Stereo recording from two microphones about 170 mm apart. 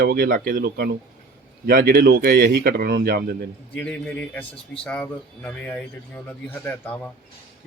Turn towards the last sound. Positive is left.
turn(degrees=10)  # may be behind; listen again after turning